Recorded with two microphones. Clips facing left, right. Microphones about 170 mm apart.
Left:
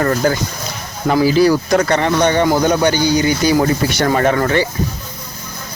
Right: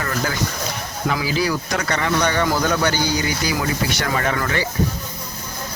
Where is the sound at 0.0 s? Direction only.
40° left (ahead or behind).